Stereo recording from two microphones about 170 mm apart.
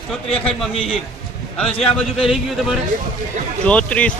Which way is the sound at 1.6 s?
5° left (ahead or behind).